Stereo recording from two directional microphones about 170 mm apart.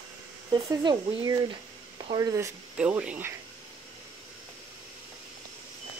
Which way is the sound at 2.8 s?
5° right (ahead or behind).